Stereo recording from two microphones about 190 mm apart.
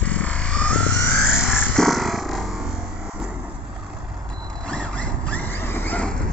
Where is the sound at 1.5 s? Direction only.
5° left (ahead or behind).